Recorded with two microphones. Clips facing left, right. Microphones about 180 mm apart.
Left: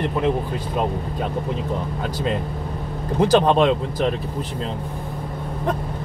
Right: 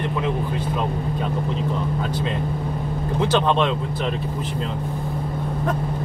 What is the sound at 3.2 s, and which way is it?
Speech, 40° left (ahead or behind).